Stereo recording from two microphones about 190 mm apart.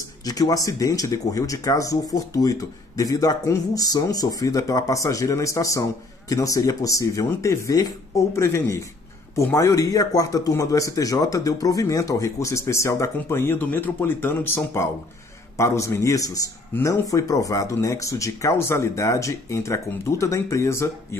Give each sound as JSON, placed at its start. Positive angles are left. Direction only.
{"t": 0.2, "sound": "speech", "side_deg": 20}